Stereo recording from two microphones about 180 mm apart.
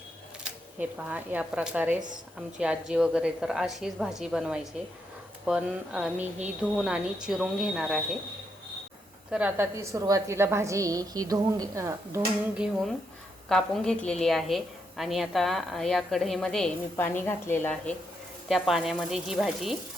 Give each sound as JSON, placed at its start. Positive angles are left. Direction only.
{"t": 0.4, "sound": "a woman's voice", "side_deg": -10}
{"t": 9.3, "sound": "a woman's voice", "side_deg": -10}
{"t": 12.5, "sound": "a woman's voice", "side_deg": -5}